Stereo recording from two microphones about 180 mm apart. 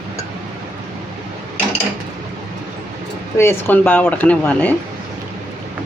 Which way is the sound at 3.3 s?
15° left (ahead or behind).